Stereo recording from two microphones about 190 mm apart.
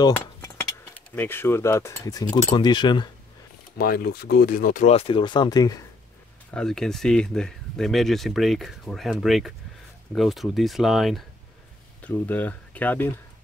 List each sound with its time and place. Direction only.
0.0 s speech: 15° left (ahead or behind)
3.7 s speech: 50° left (ahead or behind); by 5.8 s 20° left (ahead or behind)
6.5 s speech: 5° left (ahead or behind)